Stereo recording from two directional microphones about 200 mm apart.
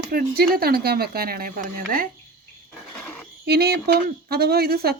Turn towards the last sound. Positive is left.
turn(degrees=-50)  # may be behind; listen again after turning